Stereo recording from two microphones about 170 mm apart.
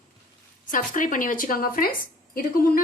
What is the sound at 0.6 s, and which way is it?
A woman's voice, 50° left (ahead or behind).